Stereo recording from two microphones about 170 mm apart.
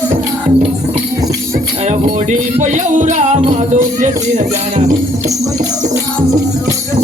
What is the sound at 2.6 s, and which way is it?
Music, 45° right (ahead or behind).